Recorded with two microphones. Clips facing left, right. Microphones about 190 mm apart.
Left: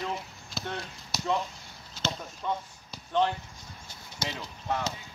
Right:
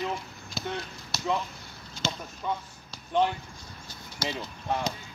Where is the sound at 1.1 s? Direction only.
15° left (ahead or behind).